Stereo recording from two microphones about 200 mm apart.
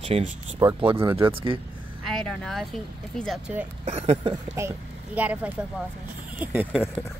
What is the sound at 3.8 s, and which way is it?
Speech, 30° right (ahead or behind).